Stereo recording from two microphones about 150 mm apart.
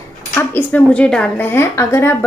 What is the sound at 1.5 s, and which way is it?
Speech, 15° left (ahead or behind).